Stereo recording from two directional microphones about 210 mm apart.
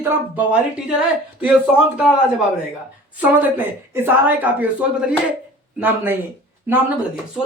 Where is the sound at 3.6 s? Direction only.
10° right (ahead or behind).